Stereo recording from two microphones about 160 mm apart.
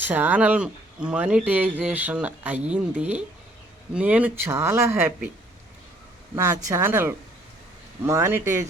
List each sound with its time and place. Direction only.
0.0 s speech: 10° right (ahead or behind)
6.3 s speech: 20° right (ahead or behind)